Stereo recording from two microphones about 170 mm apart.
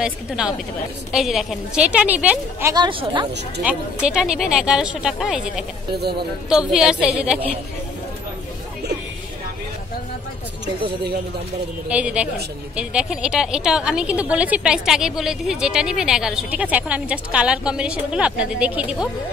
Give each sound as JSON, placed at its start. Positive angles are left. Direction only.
{"t": 0.0, "sound": "a woman's voice", "side_deg": -5}
{"t": 2.7, "sound": "speech", "side_deg": -30}
{"t": 3.6, "sound": "a woman's voice", "side_deg": -5}
{"t": 11.9, "sound": "a woman's voice", "side_deg": -5}